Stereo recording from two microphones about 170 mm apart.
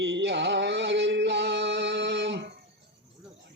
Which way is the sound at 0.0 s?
90° right.